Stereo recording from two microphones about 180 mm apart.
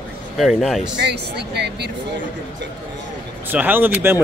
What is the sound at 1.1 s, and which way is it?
Speech, 65° right (ahead or behind).